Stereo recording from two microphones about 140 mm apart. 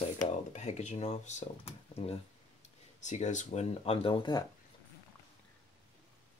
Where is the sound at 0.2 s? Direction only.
55° left (ahead or behind).